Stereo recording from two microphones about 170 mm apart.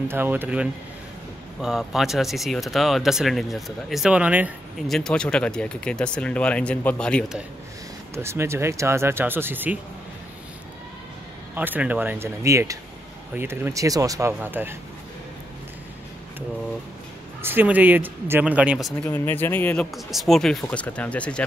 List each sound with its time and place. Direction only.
0.1 s speech: 10° right (ahead or behind)
4.8 s speech: 5° left (ahead or behind)
8.1 s speech: 15° right (ahead or behind)
11.5 s speech: 10° right (ahead or behind)
17.4 s speech: 10° right (ahead or behind)
19.0 s speech: 10° left (ahead or behind)